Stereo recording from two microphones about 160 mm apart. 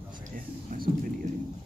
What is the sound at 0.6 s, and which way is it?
Music, 60° right (ahead or behind).